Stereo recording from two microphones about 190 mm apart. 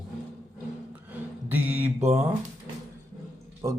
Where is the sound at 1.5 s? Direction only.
10° right (ahead or behind).